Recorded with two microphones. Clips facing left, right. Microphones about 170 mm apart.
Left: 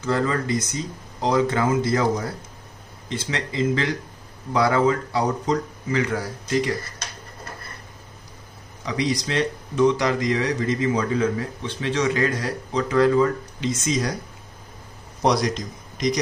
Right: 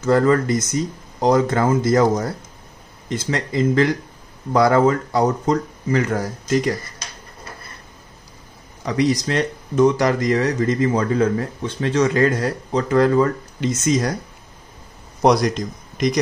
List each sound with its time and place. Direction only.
0.0 s speech: 45° right (ahead or behind)
8.8 s speech: 50° right (ahead or behind)
15.2 s a man's voice: 50° right (ahead or behind)